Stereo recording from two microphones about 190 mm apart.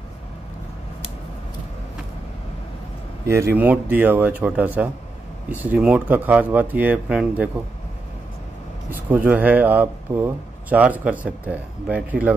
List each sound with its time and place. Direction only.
3.3 s speech: 15° right (ahead or behind)
8.9 s speech: 10° right (ahead or behind)